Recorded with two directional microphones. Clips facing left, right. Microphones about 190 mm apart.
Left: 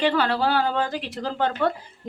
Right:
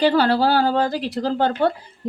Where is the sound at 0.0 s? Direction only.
35° right (ahead or behind).